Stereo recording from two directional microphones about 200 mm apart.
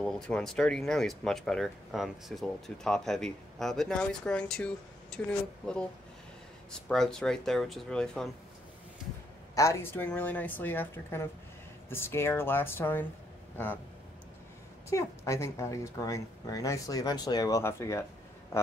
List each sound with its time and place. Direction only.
0.0 s speech: 5° left (ahead or behind)
6.9 s speech: 5° left (ahead or behind)
9.6 s speech: 15° left (ahead or behind)
14.9 s speech: 15° left (ahead or behind)